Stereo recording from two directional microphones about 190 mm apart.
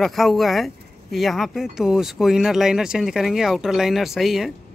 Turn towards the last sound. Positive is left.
turn(degrees=0)  # may be behind; listen again after turning